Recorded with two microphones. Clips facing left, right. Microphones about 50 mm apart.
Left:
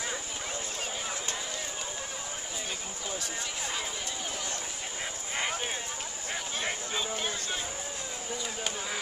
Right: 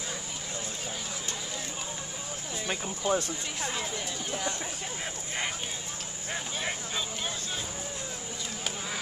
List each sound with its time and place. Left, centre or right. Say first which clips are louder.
2.7 s speech: right 14 dB; right